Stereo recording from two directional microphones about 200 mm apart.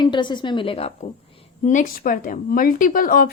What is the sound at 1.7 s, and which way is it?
Speech, 40° left (ahead or behind).